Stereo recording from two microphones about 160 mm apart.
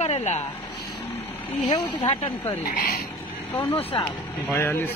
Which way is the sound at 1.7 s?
35° left (ahead or behind).